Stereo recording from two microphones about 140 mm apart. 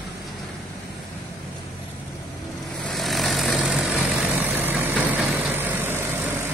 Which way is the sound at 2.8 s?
Centre (ahead or behind).